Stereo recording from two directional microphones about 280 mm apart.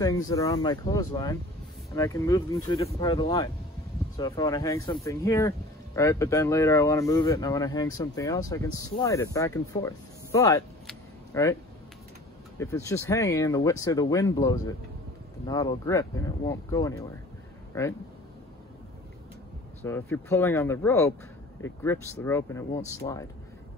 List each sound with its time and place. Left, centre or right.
0.0 s speech: centre
10.9 s a sound: centre
12.5 s speech: centre
19.8 s speech: centre